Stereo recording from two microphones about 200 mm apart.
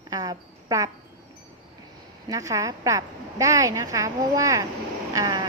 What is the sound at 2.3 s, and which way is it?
A woman's voice, 15° right (ahead or behind).